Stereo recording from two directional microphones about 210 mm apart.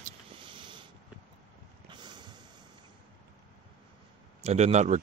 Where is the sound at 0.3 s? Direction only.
25° right (ahead or behind).